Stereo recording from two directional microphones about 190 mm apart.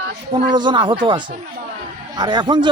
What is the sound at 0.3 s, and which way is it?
Speech, 25° right (ahead or behind).